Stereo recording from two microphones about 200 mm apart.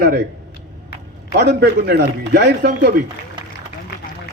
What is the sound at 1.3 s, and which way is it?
A man's voice, 55° right (ahead or behind).